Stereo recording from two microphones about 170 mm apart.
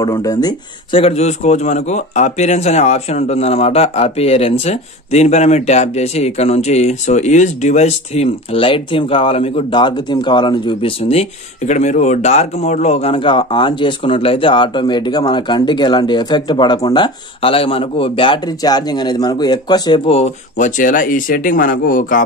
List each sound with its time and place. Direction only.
0.0 s speech: 20° left (ahead or behind)
1.0 s a man's voice: 40° left (ahead or behind); by 20.0 s 25° left (ahead or behind)
20.1 s speech: 40° left (ahead or behind)